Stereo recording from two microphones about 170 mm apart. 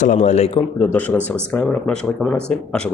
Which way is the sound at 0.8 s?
10° left (ahead or behind).